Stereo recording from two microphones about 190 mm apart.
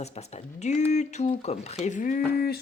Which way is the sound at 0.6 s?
35° left (ahead or behind).